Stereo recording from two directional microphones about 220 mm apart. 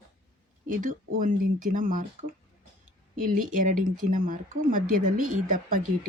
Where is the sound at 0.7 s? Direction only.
40° right (ahead or behind).